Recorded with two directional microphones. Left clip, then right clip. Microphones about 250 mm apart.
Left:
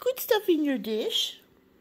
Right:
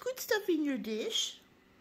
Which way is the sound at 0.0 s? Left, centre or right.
Centre.